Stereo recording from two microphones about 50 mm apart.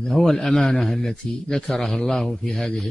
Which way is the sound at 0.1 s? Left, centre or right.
Centre.